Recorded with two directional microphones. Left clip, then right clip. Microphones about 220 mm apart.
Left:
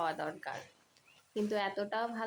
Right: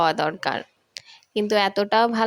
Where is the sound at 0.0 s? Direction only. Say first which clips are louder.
Right 15 dB; 40° right (ahead or behind).